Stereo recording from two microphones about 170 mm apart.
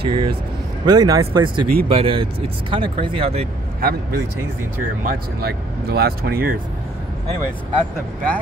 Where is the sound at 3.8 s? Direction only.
60° right (ahead or behind).